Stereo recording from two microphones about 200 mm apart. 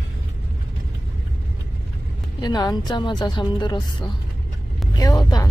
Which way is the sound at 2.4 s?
20° left (ahead or behind).